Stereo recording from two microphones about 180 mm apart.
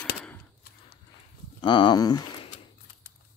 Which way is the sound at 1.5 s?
25° left (ahead or behind).